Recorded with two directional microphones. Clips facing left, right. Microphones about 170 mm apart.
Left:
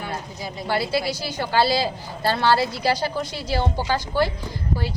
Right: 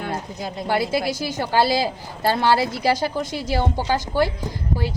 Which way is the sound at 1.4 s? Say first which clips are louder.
Right 1 dB; 15° right (ahead or behind).